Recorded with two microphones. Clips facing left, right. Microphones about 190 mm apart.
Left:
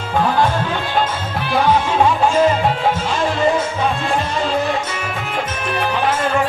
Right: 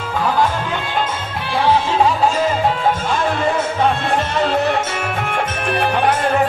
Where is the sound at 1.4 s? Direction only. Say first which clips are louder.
Even; 30° right (ahead or behind).